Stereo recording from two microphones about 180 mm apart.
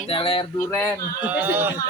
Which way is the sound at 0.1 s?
30° left (ahead or behind).